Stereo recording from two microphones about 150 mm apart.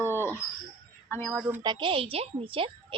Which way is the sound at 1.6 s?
30° right (ahead or behind).